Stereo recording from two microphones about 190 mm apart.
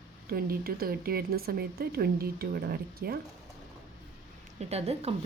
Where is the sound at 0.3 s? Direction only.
50° right (ahead or behind).